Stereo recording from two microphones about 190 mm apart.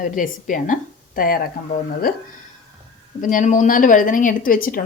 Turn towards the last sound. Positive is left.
turn(degrees=50)  # may be behind; listen again after turning